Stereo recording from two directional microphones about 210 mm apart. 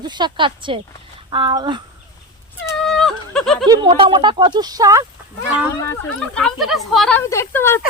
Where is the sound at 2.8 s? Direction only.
Centre (ahead or behind).